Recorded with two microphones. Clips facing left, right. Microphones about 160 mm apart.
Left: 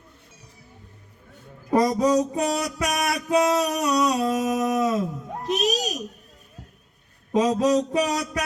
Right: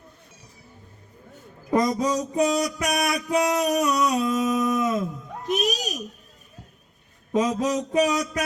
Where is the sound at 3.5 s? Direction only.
30° left (ahead or behind).